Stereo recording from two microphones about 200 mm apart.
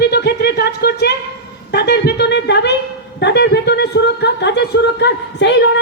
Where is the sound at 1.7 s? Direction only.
55° left (ahead or behind).